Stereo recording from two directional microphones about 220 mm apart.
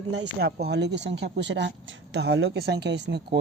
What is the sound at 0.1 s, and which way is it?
Speech, 50° right (ahead or behind).